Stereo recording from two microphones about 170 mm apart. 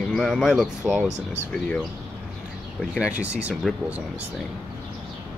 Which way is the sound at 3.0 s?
5° right (ahead or behind).